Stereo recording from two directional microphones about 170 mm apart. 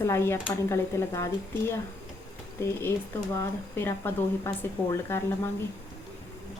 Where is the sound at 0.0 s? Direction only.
15° left (ahead or behind).